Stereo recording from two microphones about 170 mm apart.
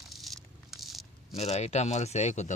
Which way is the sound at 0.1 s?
Centre (ahead or behind).